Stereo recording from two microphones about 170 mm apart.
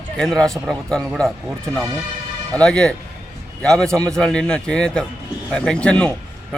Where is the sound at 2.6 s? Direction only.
5° left (ahead or behind).